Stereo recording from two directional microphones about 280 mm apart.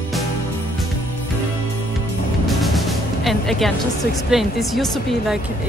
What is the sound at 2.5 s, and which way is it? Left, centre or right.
Music, centre.